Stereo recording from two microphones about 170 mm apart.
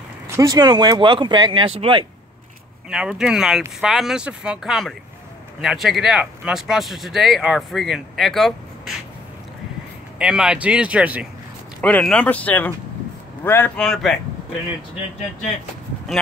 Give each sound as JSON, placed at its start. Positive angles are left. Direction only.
{"t": 0.4, "sound": "speech", "side_deg": -20}
{"t": 2.9, "sound": "speech", "side_deg": -5}
{"t": 10.1, "sound": "speech", "side_deg": -5}
{"t": 11.8, "sound": "speech", "side_deg": 5}